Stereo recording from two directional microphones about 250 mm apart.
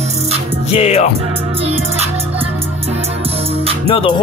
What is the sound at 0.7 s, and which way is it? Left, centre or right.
Music, left.